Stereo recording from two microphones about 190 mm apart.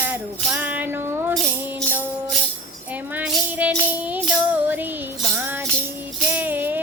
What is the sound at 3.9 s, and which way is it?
Music, 10° right (ahead or behind).